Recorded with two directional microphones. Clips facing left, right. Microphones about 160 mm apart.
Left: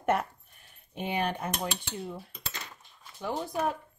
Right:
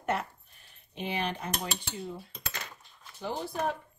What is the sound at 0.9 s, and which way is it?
Speech, 45° left (ahead or behind).